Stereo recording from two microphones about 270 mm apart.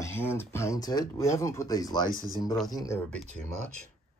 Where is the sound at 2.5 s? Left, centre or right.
Centre.